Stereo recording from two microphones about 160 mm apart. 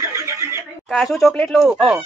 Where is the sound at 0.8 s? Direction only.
Centre (ahead or behind).